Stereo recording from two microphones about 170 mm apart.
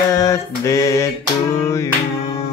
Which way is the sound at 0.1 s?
20° left (ahead or behind).